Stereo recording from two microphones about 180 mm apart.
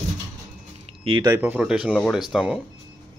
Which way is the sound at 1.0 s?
25° right (ahead or behind).